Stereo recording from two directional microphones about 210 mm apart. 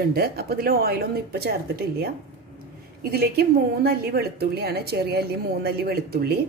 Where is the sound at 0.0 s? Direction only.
45° right (ahead or behind).